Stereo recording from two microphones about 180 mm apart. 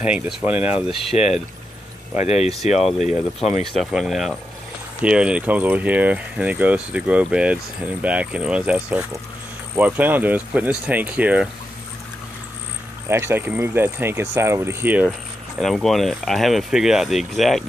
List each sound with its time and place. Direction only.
0.0 s speech: 5° right (ahead or behind)
0.9 s speech: 35° left (ahead or behind)
3.7 s speech: centre (ahead or behind)
13.1 s speech: 15° right (ahead or behind)
15.6 s speech: centre (ahead or behind)